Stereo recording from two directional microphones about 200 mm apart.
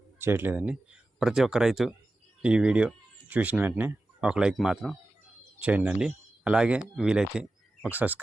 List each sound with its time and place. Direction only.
0.2 s speech: 10° right (ahead or behind)